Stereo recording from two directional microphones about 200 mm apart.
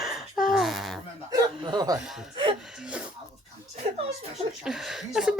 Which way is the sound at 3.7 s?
30° right (ahead or behind).